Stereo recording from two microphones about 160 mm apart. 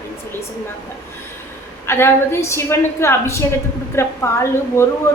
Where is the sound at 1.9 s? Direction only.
15° left (ahead or behind).